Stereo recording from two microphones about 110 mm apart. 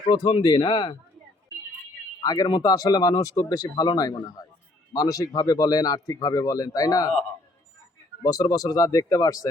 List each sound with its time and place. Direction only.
0.1 s speech: 50° left (ahead or behind)
2.2 s speech: 35° left (ahead or behind)
8.2 s speech: 35° left (ahead or behind)